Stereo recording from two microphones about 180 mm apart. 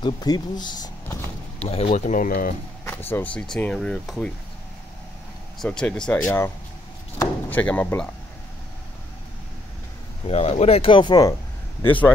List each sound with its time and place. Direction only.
0.0 s speech: 25° left (ahead or behind)
1.6 s speech: 35° left (ahead or behind); by 2.5 s 50° left (ahead or behind)
2.8 s speech: 10° left (ahead or behind)
5.6 s speech: 5° left (ahead or behind)
10.2 s speech: 35° left (ahead or behind)
11.8 s speech: 10° left (ahead or behind)